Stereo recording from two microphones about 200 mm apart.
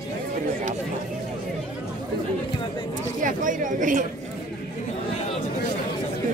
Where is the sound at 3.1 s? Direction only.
40° right (ahead or behind).